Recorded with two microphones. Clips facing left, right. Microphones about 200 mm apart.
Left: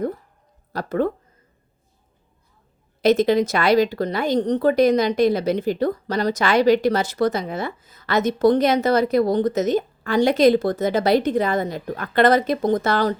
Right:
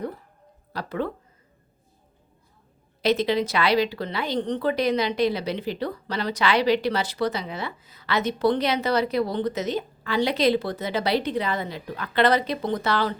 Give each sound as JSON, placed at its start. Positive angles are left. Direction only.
{"t": 0.7, "sound": "speech", "side_deg": 45}
{"t": 3.0, "sound": "speech", "side_deg": 45}